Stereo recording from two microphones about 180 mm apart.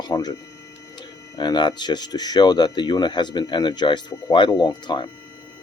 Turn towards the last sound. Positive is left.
turn(degrees=25)  # may be behind; listen again after turning